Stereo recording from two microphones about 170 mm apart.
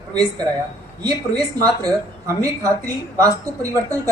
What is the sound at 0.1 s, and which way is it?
A woman's voice, 25° right (ahead or behind).